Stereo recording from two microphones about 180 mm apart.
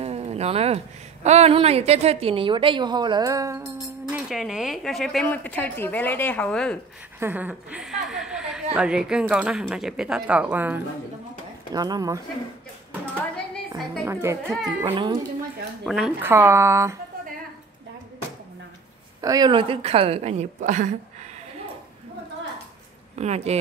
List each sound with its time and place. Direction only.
0.0 s a sound: 35° right (ahead or behind)
1.2 s a woman's voice: 35° right (ahead or behind); by 3.7 s 15° right (ahead or behind)
3.8 s speech: centre (ahead or behind)
7.2 s a sound: 10° right (ahead or behind)
8.7 s speech: 5° right (ahead or behind)
11.7 s a woman's voice: 20° right (ahead or behind)
14.0 s speech: 15° right (ahead or behind)
14.8 s a woman's voice: 25° right (ahead or behind)
15.8 s speech: centre (ahead or behind)
16.2 s speech: 10° right (ahead or behind)
19.2 s a woman's voice: 20° right (ahead or behind); by 20.9 s 45° right (ahead or behind)
23.1 s a woman's voice: 35° right (ahead or behind)